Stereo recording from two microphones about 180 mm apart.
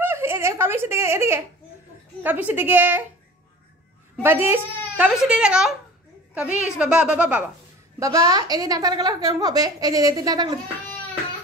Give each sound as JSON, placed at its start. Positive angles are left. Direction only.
{"t": 0.0, "sound": "a woman's voice", "side_deg": -15}
{"t": 4.2, "sound": "a child's voice", "side_deg": -15}
{"t": 8.0, "sound": "a woman's voice", "side_deg": -20}